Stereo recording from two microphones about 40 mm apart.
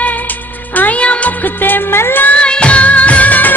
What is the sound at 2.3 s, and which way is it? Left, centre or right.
Music, left.